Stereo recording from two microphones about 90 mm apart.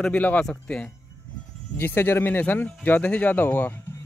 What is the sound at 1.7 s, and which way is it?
A man's voice, 25° left (ahead or behind).